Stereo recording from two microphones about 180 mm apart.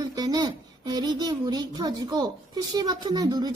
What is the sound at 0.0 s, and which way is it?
A child's voice, 20° right (ahead or behind).